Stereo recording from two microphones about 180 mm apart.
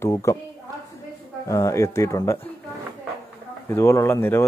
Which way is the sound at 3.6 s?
15° left (ahead or behind).